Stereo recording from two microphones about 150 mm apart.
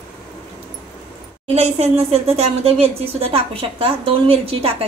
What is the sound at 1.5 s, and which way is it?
Speech, 45° right (ahead or behind).